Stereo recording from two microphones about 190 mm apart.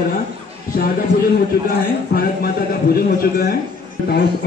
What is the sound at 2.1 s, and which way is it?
A man's voice, 50° left (ahead or behind).